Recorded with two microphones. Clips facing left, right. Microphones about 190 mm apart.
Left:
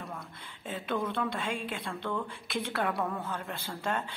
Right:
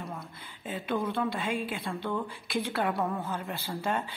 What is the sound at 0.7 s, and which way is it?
Speech, centre (ahead or behind).